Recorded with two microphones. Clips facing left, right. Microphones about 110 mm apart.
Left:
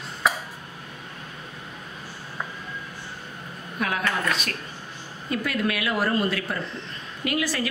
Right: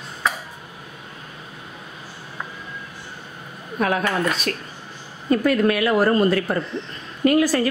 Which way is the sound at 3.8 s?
40° right (ahead or behind).